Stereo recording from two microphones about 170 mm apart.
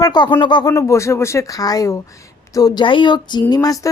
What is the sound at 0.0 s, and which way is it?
Speech, 25° left (ahead or behind).